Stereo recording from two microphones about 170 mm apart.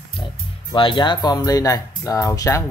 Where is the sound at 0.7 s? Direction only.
30° left (ahead or behind).